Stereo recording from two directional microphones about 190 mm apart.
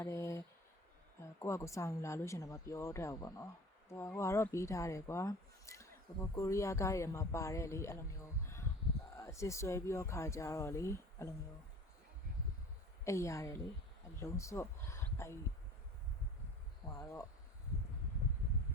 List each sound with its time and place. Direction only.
0.0 s a sound: 15° left (ahead or behind)
1.2 s a woman's voice: 15° left (ahead or behind)
13.1 s a woman's voice: 15° left (ahead or behind)
17.0 s a woman's voice: 15° left (ahead or behind)